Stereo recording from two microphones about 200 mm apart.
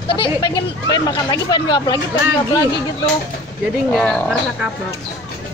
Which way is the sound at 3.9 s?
5° left (ahead or behind).